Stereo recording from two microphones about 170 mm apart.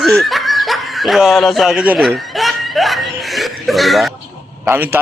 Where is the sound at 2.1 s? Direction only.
Centre (ahead or behind).